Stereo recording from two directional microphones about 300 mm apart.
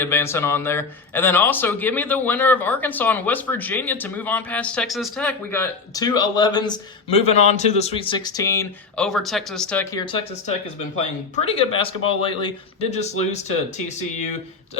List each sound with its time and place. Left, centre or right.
0.0 s a man's voice: centre
11.3 s speech: centre